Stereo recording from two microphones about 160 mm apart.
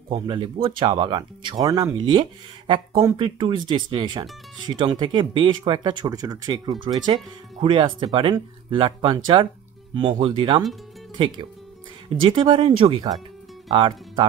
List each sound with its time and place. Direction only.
0.1 s speech: 30° right (ahead or behind)
12.1 s speech: 30° right (ahead or behind)